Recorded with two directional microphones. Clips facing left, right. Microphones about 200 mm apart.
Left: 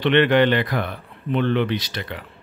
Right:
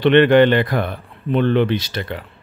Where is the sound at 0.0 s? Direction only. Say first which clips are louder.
Right 5 dB; 45° right (ahead or behind).